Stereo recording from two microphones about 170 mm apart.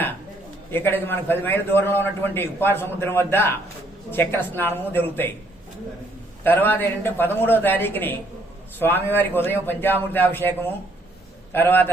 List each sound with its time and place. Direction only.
0.7 s a man's voice: 10° left (ahead or behind)
6.4 s a man's voice: 10° left (ahead or behind)
11.5 s a man's voice: 10° left (ahead or behind)